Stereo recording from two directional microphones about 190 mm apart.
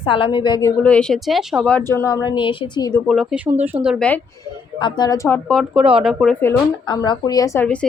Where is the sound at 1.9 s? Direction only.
15° left (ahead or behind).